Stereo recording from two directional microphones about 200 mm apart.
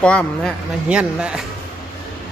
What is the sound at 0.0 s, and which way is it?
Speech, 5° left (ahead or behind).